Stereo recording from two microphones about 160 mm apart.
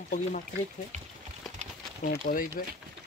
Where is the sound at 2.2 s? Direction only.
55° left (ahead or behind).